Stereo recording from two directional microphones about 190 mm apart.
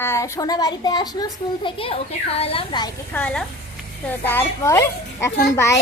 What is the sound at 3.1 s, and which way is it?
A woman's voice, 5° left (ahead or behind).